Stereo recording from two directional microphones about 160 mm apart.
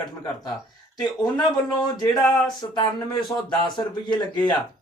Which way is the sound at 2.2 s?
5° left (ahead or behind).